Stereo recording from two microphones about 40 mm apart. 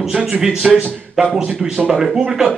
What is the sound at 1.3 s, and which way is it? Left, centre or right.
Speech, centre.